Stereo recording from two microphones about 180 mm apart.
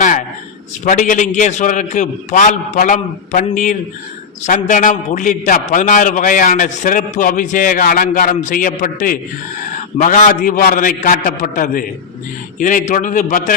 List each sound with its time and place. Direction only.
0.9 s a man's voice: 45° left (ahead or behind)